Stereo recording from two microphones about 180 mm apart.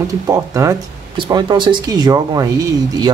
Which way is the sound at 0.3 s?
20° right (ahead or behind).